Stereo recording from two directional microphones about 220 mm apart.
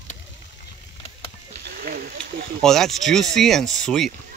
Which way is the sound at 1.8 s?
40° right (ahead or behind).